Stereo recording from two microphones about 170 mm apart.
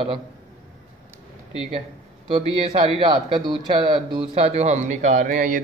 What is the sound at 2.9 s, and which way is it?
A man's voice, 30° right (ahead or behind).